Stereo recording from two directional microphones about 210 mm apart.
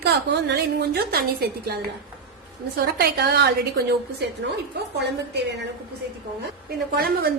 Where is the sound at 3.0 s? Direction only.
50° right (ahead or behind).